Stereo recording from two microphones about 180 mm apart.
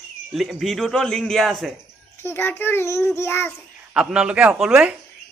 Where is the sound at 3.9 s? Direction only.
5° right (ahead or behind).